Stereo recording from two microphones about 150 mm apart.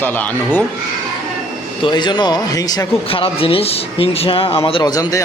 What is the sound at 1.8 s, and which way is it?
Speech, 30° left (ahead or behind).